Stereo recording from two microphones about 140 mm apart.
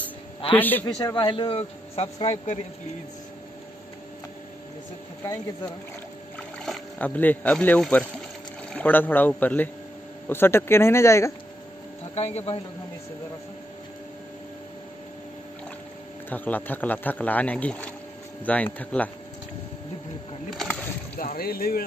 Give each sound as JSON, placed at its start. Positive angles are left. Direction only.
{"t": 0.5, "sound": "speech", "side_deg": 15}
{"t": 0.8, "sound": "a man's voice", "side_deg": 30}
{"t": 5.2, "sound": "speech", "side_deg": 20}
{"t": 6.6, "sound": "speech", "side_deg": 5}
{"t": 12.2, "sound": "speech", "side_deg": 50}
{"t": 16.3, "sound": "speech", "side_deg": 10}
{"t": 20.4, "sound": "a sound", "side_deg": 5}
{"t": 21.2, "sound": "speech", "side_deg": 90}